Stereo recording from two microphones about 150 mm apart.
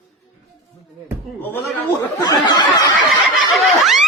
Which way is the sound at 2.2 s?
25° left (ahead or behind).